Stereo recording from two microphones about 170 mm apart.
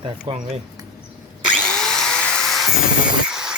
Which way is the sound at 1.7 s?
5° left (ahead or behind).